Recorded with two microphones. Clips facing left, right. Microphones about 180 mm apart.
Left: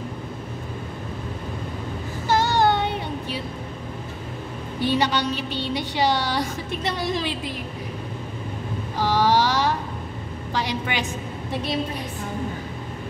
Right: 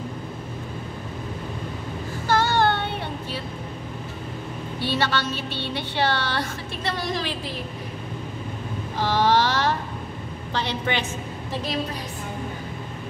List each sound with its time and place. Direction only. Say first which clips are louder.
2.2 s child singing: left 1 dB; 20° left (ahead or behind)
4.7 s a woman's voice: left 3 dB; 15° left (ahead or behind)
9.0 s a sound: left 1 dB; 10° left (ahead or behind)
10.5 s a woman's voice: even; 10° left (ahead or behind)